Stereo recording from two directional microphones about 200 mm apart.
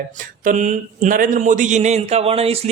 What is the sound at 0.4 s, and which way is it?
A man's voice, 40° right (ahead or behind).